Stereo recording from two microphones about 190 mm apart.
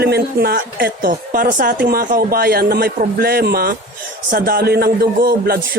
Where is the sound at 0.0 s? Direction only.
55° right (ahead or behind).